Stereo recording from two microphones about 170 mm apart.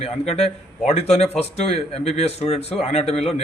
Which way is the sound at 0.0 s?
35° left (ahead or behind).